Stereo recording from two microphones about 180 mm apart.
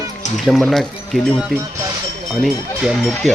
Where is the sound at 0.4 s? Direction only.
Centre (ahead or behind).